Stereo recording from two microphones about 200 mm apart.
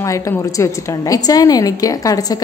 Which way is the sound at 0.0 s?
15° left (ahead or behind).